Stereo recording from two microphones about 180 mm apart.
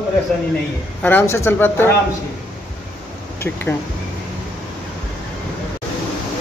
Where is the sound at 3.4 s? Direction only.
15° left (ahead or behind).